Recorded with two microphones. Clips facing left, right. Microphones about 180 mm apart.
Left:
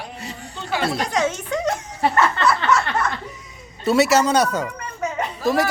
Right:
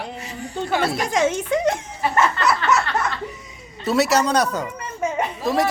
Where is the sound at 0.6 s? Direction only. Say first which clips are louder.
Right 3 dB; 50° right (ahead or behind).